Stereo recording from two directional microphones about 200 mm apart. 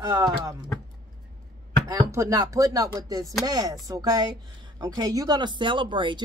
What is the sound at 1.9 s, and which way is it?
Speech, 15° right (ahead or behind).